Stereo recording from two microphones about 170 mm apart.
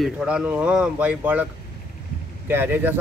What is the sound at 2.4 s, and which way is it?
Speech, 10° right (ahead or behind).